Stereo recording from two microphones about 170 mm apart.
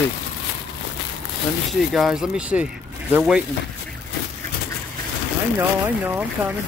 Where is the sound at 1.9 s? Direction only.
Centre (ahead or behind).